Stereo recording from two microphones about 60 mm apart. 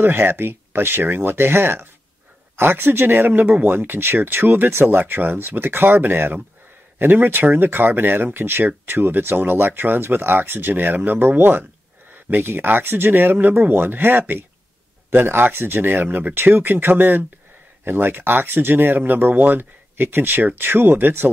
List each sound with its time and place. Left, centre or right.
0.0 s speech: right